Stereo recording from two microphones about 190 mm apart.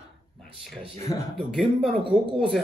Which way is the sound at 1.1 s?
20° left (ahead or behind).